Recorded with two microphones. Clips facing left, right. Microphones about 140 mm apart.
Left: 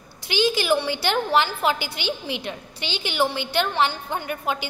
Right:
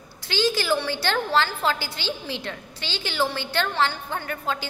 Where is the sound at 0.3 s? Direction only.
15° left (ahead or behind).